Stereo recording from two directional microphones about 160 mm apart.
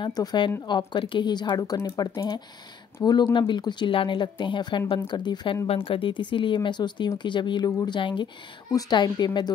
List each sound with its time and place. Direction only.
0.0 s speech: 25° left (ahead or behind)